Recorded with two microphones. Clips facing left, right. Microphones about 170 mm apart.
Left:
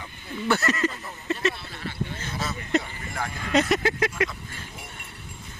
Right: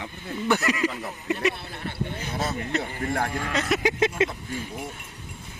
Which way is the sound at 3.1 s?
60° right (ahead or behind).